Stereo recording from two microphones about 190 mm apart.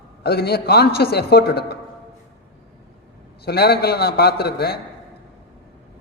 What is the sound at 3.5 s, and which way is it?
A man's voice, 55° left (ahead or behind).